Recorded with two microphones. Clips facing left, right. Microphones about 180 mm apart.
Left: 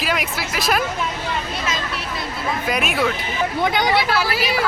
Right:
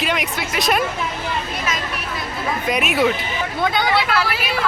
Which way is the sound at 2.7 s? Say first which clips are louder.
Right 3 dB; centre (ahead or behind).